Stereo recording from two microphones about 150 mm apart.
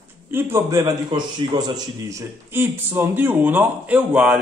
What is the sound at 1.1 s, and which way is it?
A man's voice, 30° right (ahead or behind).